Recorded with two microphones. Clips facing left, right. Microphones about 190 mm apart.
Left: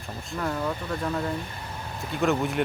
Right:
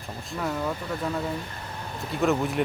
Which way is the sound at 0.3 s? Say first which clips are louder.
Even; centre (ahead or behind).